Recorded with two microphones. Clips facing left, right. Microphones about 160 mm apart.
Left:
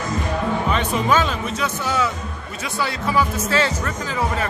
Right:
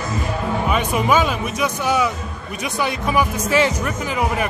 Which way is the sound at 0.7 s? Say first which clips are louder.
Right 3 dB; 10° right (ahead or behind).